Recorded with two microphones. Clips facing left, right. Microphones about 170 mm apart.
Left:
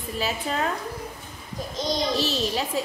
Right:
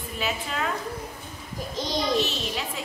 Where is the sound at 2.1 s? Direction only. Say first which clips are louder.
Left 1 dB; 35° left (ahead or behind).